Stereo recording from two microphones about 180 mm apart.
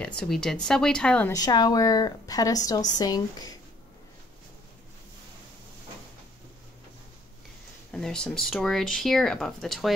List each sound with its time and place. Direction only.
0.0 s speech: 5° left (ahead or behind)
1.3 s a woman's voice: 20° left (ahead or behind)
7.9 s speech: 5° left (ahead or behind)